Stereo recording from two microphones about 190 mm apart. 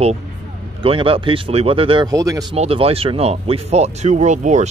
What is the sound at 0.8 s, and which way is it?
Speech, 30° right (ahead or behind).